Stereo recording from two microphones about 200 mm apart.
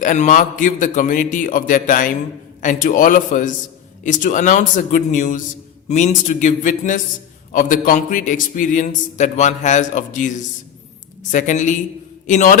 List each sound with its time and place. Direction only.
0.0 s a man's voice: 40° left (ahead or behind)